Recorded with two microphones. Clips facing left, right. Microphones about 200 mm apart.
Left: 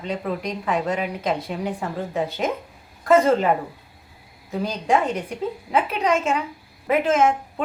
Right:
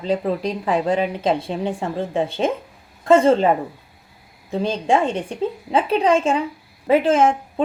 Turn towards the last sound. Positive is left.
turn(degrees=-30)  # may be behind; listen again after turning